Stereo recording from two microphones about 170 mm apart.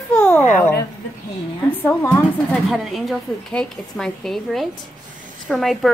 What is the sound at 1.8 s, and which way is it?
A woman's voice, 10° left (ahead or behind).